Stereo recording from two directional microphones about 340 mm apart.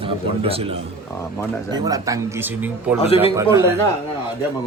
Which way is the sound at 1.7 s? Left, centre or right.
Centre.